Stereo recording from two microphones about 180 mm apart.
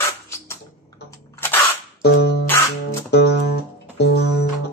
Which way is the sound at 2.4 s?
15° left (ahead or behind).